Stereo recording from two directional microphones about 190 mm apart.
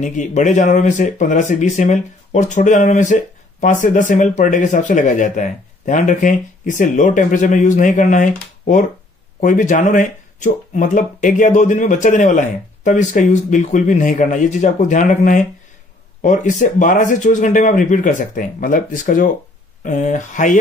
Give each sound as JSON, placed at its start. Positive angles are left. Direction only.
{"t": 0.0, "sound": "speech", "side_deg": 40}